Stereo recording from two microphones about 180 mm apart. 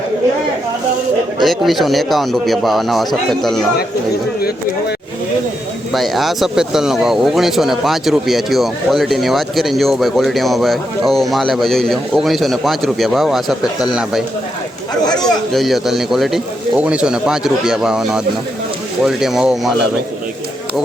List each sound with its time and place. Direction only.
1.4 s speech: centre (ahead or behind)
4.4 s speech: 60° left (ahead or behind)
5.9 s speech: centre (ahead or behind)
15.5 s speech: centre (ahead or behind)